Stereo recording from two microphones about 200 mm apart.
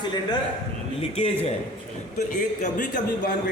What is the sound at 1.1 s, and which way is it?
A man's voice, 30° left (ahead or behind).